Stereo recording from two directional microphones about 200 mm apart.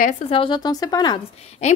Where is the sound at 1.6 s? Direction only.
35° left (ahead or behind).